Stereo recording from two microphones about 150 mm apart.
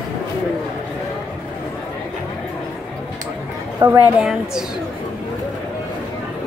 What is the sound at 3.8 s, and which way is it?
Speech, 15° right (ahead or behind).